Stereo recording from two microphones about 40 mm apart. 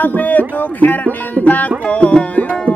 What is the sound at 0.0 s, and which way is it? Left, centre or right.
Music, left.